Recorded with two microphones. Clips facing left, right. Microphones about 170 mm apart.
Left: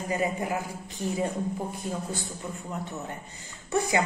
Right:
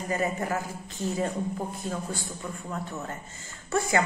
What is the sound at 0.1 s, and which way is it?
A woman's voice, 15° left (ahead or behind).